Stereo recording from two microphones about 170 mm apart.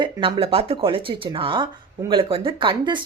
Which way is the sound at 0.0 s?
30° right (ahead or behind).